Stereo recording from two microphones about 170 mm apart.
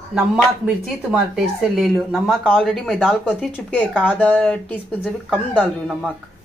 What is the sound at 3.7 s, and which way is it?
Speech, 10° left (ahead or behind).